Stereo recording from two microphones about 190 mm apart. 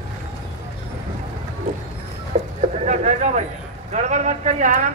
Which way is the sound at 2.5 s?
35° right (ahead or behind).